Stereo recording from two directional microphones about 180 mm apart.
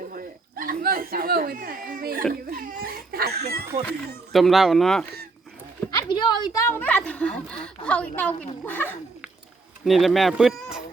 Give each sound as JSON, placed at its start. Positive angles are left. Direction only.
{"t": 0.1, "sound": "a sound", "side_deg": -50}
{"t": 2.5, "sound": "speech", "side_deg": -55}
{"t": 4.3, "sound": "speech", "side_deg": 0}
{"t": 5.9, "sound": "a woman's voice", "side_deg": 25}
{"t": 9.8, "sound": "speech", "side_deg": 0}